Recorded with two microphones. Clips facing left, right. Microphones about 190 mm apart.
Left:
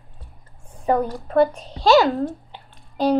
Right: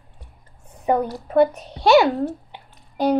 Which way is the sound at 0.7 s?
20° right (ahead or behind).